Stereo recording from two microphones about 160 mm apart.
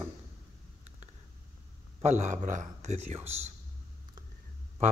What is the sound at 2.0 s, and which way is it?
Speech, 45° right (ahead or behind).